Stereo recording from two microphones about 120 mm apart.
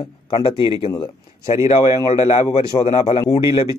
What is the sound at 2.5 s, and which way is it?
Speech, 60° left (ahead or behind).